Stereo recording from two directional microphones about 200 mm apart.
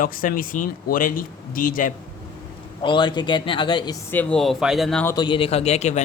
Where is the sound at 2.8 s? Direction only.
25° left (ahead or behind).